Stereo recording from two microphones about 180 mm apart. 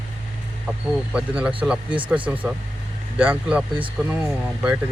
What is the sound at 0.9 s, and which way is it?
Speech, 5° right (ahead or behind).